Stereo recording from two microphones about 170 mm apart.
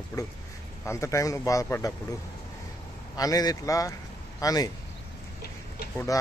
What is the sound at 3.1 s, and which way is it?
Speech, 20° left (ahead or behind).